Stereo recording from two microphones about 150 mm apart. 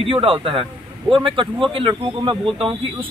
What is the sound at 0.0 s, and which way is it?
Speech, 35° right (ahead or behind).